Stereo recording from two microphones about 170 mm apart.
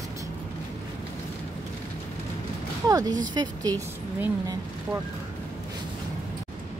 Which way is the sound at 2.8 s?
20° right (ahead or behind).